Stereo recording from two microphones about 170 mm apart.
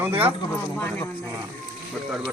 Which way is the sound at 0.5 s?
10° left (ahead or behind).